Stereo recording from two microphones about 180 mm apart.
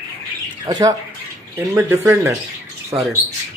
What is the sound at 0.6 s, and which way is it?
Speech, 20° right (ahead or behind).